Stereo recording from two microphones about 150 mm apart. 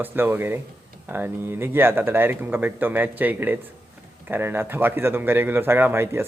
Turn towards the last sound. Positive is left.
turn(degrees=-15)  # may be behind; listen again after turning